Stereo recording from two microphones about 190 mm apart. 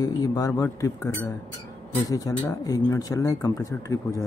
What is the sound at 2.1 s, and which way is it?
Speech, 20° left (ahead or behind).